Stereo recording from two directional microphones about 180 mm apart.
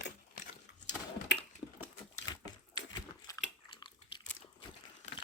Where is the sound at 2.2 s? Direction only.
25° left (ahead or behind).